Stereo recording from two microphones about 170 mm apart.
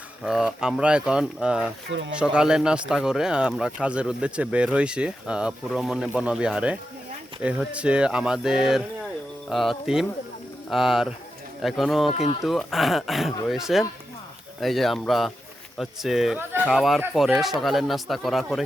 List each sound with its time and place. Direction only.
0.2 s speech: 5° right (ahead or behind)
1.9 s speech: 90° right
2.1 s speech: 5° right (ahead or behind)
12.1 s speech: 40° left (ahead or behind)
12.4 s speech: centre (ahead or behind)